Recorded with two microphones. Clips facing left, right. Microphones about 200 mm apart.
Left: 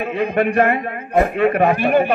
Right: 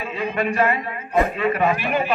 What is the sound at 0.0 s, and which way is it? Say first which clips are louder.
A man's voice: left 6 dB; 60° left (ahead or behind).